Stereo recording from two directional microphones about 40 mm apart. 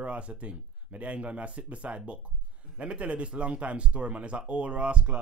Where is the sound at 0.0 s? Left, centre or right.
Right.